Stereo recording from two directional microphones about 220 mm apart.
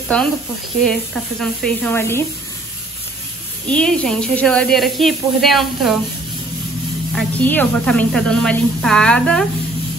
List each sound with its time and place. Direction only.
0.8 s speech: centre (ahead or behind)
3.6 s speech: 5° left (ahead or behind)
7.1 s speech: 5° left (ahead or behind)